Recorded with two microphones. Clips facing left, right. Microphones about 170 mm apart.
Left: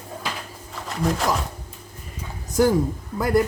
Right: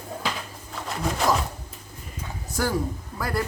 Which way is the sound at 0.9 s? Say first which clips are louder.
Left 3 dB; centre (ahead or behind).